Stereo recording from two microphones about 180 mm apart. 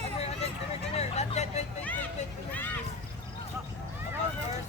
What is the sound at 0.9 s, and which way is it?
Speech, 35° left (ahead or behind).